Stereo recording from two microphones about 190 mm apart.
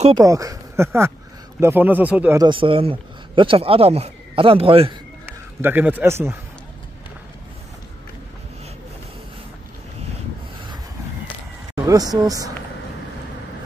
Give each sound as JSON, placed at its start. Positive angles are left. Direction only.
{"t": 0.2, "sound": "speech", "side_deg": -20}
{"t": 2.4, "sound": "speech", "side_deg": -25}
{"t": 5.2, "sound": "a man's voice", "side_deg": -10}
{"t": 11.7, "sound": "speech", "side_deg": -20}